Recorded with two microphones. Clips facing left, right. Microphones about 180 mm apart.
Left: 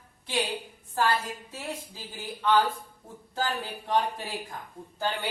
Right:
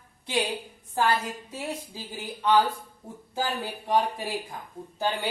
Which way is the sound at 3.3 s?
10° right (ahead or behind).